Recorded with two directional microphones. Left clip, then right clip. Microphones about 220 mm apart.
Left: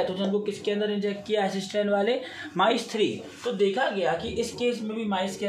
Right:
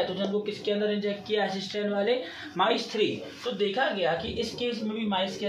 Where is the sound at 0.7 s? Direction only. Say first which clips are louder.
Even; 50° left (ahead or behind).